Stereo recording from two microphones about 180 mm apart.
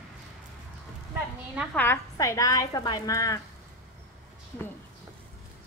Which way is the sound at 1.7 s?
15° left (ahead or behind).